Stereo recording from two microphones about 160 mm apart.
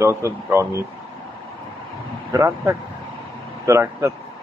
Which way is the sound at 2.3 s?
20° right (ahead or behind).